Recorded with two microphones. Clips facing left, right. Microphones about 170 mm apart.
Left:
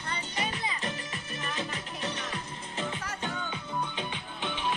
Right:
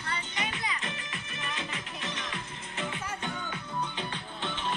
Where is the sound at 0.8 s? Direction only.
40° left (ahead or behind).